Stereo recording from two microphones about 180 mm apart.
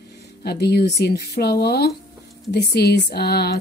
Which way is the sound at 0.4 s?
60° left (ahead or behind).